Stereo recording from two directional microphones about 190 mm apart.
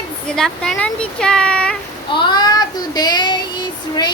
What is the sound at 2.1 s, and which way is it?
Child singing, 25° left (ahead or behind).